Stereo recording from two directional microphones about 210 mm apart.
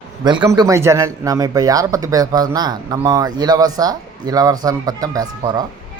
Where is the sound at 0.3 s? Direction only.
15° right (ahead or behind).